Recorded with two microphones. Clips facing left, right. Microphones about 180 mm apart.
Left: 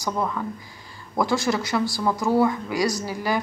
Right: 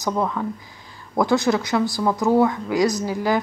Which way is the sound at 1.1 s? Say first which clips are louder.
Right 4 dB; 20° right (ahead or behind).